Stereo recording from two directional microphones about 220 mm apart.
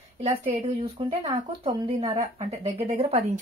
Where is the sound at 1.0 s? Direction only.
25° right (ahead or behind).